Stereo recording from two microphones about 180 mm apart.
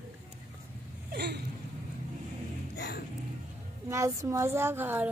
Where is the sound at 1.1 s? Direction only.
65° right (ahead or behind).